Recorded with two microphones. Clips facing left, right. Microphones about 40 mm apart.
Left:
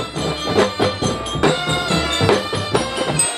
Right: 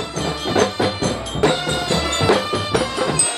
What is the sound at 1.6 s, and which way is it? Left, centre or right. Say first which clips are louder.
Music: left 1 dB; left.